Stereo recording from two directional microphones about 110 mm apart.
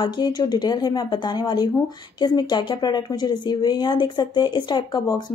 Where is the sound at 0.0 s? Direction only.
40° left (ahead or behind).